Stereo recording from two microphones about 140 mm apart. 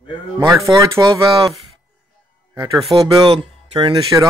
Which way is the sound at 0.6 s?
20° right (ahead or behind).